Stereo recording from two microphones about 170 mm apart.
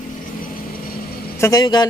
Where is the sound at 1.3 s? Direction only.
20° left (ahead or behind).